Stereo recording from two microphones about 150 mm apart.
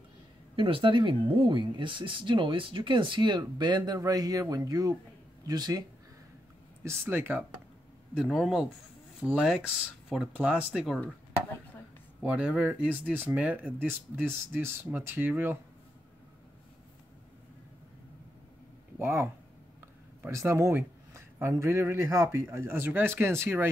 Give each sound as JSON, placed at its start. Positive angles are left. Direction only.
{"t": 0.6, "sound": "speech", "side_deg": -35}
{"t": 6.8, "sound": "speech", "side_deg": -15}
{"t": 8.1, "sound": "speech", "side_deg": 0}
{"t": 12.2, "sound": "speech", "side_deg": -5}
{"t": 18.9, "sound": "speech", "side_deg": -15}